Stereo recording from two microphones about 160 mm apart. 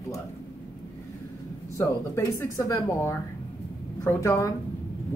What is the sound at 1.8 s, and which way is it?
Speech, 20° left (ahead or behind).